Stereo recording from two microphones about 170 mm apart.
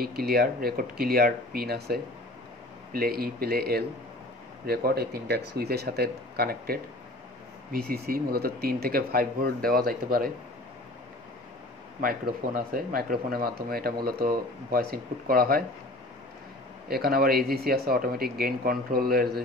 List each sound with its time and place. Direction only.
0.0 s speech: 65° right (ahead or behind)
7.9 s speech: 60° right (ahead or behind)
12.0 s speech: 55° right (ahead or behind)
16.9 s speech: 65° right (ahead or behind)